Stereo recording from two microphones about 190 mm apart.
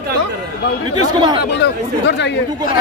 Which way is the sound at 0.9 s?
25° right (ahead or behind).